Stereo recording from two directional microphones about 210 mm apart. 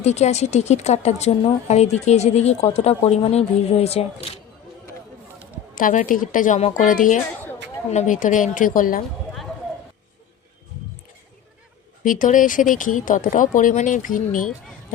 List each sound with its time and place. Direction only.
0.0 s a woman's voice: 30° left (ahead or behind)
5.7 s a woman's voice: 40° left (ahead or behind)
12.0 s a woman's voice: 40° left (ahead or behind)